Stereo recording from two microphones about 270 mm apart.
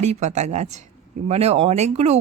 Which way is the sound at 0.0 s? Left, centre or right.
Right.